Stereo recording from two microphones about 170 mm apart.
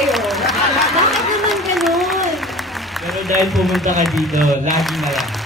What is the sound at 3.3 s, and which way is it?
Speech, centre (ahead or behind).